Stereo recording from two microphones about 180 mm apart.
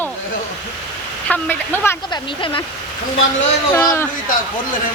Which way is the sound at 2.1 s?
30° left (ahead or behind).